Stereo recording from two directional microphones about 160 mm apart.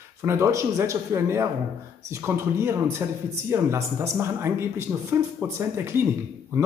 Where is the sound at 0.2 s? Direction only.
15° right (ahead or behind).